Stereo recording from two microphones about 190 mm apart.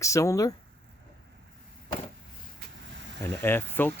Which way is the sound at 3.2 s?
15° left (ahead or behind).